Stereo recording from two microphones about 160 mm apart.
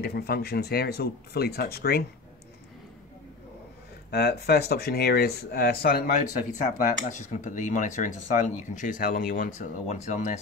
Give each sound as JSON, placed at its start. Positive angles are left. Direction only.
{"t": 0.0, "sound": "speech", "side_deg": 75}
{"t": 4.1, "sound": "speech", "side_deg": 80}
{"t": 6.6, "sound": "speech", "side_deg": 50}